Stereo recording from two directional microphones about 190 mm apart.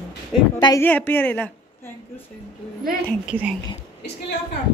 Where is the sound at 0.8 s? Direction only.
10° left (ahead or behind).